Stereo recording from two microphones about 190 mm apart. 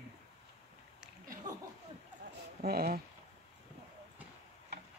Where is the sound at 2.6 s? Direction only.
55° right (ahead or behind).